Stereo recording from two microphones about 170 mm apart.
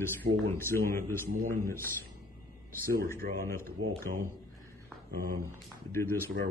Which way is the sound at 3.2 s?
70° right (ahead or behind).